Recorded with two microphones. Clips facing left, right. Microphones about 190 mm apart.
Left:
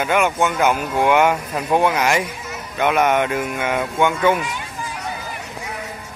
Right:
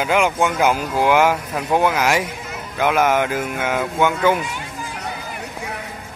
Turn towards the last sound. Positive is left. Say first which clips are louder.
# even
turn(degrees=-5)  # may be behind; listen again after turning